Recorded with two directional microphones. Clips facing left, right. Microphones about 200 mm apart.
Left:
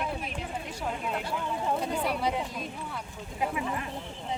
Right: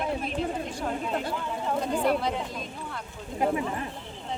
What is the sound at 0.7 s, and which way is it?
Speech, 10° left (ahead or behind).